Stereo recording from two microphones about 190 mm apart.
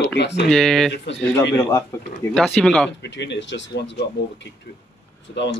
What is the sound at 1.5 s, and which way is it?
Speech, 15° left (ahead or behind).